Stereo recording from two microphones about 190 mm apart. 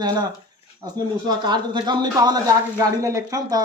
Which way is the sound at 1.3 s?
20° right (ahead or behind).